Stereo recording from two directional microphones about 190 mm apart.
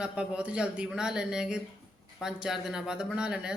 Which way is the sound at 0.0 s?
5° right (ahead or behind).